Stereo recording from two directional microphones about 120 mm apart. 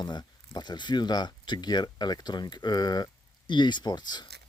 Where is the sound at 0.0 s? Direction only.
35° left (ahead or behind).